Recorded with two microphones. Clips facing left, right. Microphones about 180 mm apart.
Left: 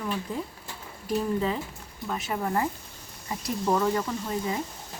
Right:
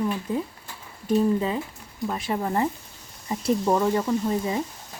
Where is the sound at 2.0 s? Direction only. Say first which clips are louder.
Right 3 dB; 30° right (ahead or behind).